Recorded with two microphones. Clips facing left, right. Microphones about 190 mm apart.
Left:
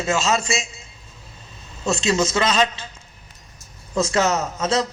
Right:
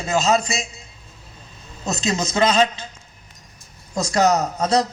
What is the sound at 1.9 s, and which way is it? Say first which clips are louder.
Speech: left 3 dB; 40° right (ahead or behind).